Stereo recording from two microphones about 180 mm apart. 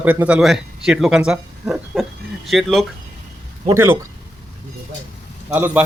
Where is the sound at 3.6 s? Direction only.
15° right (ahead or behind).